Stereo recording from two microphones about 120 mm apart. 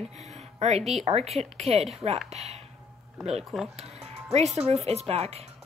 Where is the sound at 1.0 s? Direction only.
60° right (ahead or behind).